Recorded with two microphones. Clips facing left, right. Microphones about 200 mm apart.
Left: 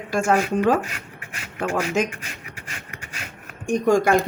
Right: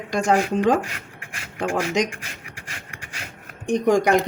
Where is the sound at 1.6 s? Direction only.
15° right (ahead or behind).